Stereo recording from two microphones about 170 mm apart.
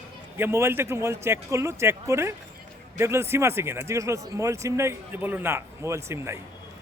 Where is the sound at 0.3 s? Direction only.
15° right (ahead or behind).